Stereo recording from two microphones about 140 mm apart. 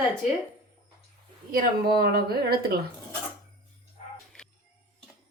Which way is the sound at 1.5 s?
90° right.